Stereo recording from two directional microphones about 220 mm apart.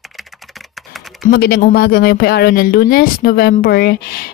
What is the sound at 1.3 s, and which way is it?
Speech, 45° left (ahead or behind).